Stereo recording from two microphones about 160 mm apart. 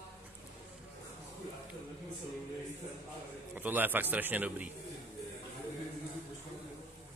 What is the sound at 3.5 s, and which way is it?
A man's voice, 10° right (ahead or behind).